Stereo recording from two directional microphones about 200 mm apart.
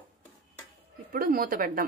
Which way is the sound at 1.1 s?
45° right (ahead or behind).